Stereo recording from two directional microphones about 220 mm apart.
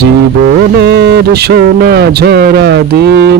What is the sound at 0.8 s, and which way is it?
Speech, 50° right (ahead or behind).